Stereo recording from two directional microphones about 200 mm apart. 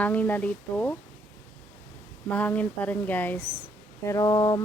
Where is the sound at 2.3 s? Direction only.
5° left (ahead or behind).